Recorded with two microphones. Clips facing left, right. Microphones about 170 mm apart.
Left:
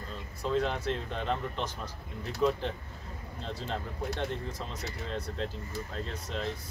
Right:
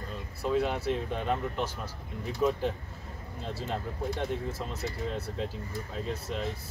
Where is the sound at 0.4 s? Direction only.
10° right (ahead or behind).